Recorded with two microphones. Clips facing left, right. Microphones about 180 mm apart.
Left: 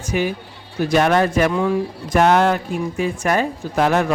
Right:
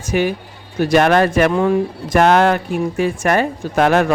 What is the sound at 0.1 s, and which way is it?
Speech, 60° right (ahead or behind).